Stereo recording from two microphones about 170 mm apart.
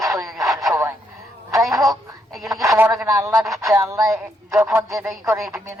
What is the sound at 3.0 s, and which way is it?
Speech, 20° right (ahead or behind).